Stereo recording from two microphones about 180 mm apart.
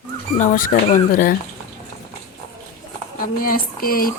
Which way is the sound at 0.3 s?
45° left (ahead or behind).